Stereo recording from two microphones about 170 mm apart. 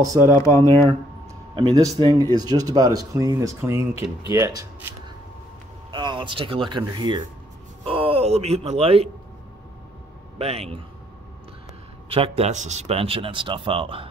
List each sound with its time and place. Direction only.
0.2 s speech: 20° left (ahead or behind)
1.5 s speech: 30° right (ahead or behind)
10.4 s speech: 35° right (ahead or behind)
12.1 s speech: 35° right (ahead or behind)